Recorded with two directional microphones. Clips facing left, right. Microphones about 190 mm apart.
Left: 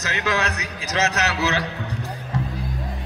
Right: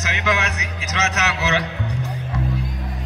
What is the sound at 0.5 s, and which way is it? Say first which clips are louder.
Speech: left 2 dB; 35° left (ahead or behind).